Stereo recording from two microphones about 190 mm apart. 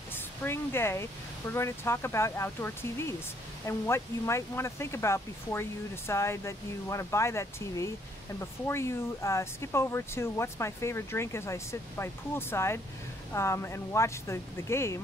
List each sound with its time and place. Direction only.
0.4 s speech: 10° left (ahead or behind)